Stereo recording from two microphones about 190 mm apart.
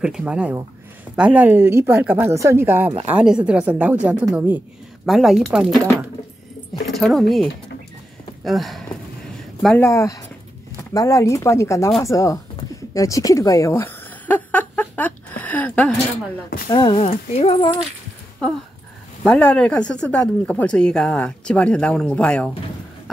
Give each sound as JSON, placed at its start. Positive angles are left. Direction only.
{"t": 0.0, "sound": "a woman's voice", "side_deg": -5}
{"t": 8.5, "sound": "speech", "side_deg": 0}
{"t": 9.8, "sound": "speech", "side_deg": 15}
{"t": 12.9, "sound": "a sound", "side_deg": 15}
{"t": 16.6, "sound": "speech", "side_deg": 25}
{"t": 19.2, "sound": "speech", "side_deg": 5}